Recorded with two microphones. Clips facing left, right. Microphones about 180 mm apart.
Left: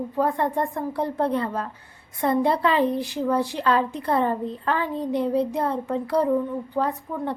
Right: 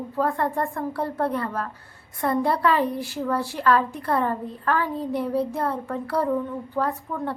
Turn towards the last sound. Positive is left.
turn(degrees=20)  # may be behind; listen again after turning